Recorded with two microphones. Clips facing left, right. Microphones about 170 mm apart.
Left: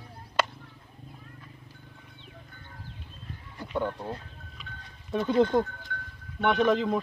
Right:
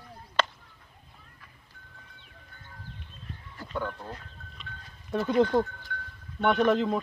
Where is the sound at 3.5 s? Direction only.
25° left (ahead or behind).